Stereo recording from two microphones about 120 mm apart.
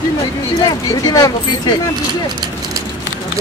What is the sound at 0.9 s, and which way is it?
Speech, 30° left (ahead or behind).